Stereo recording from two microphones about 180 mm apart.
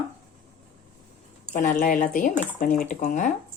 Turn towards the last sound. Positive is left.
turn(degrees=45)  # may be behind; listen again after turning